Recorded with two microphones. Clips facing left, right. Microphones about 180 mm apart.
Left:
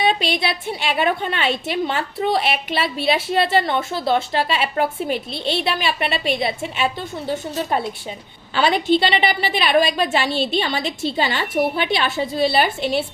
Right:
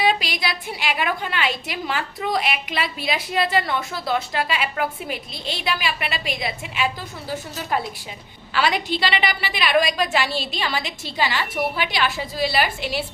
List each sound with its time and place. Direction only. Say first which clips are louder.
0.0 s a woman's voice: left 2 dB; 25° left (ahead or behind)